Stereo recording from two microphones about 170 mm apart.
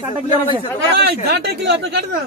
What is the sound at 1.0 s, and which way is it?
Speech, 70° right (ahead or behind).